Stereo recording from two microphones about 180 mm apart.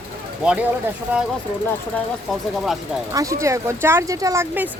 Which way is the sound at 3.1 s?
20° right (ahead or behind).